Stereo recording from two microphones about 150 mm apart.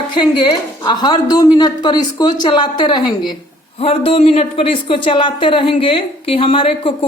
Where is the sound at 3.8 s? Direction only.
40° left (ahead or behind).